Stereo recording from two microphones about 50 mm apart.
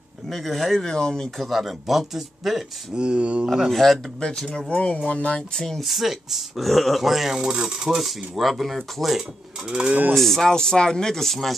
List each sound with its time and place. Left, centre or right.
0.3 s speech: centre
0.8 s speech: centre
1.4 s speech: centre
3.0 s speech: right
3.4 s speech: centre
4.5 s speech: left
5.6 s speech: centre
9.7 s mechanisms: centre
10.1 s speech: centre